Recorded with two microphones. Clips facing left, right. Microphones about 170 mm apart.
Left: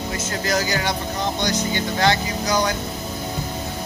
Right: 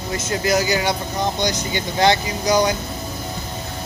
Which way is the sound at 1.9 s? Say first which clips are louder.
Right 4 dB; 15° right (ahead or behind).